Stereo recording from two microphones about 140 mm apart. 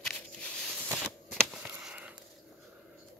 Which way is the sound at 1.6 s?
10° right (ahead or behind).